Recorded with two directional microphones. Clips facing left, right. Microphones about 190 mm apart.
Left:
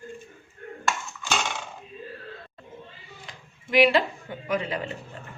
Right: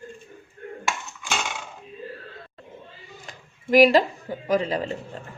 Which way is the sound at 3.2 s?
45° right (ahead or behind).